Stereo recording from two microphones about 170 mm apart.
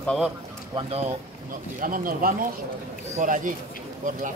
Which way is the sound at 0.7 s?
35° right (ahead or behind).